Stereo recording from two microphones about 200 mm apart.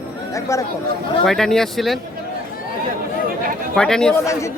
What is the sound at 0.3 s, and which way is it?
Speech, 15° left (ahead or behind).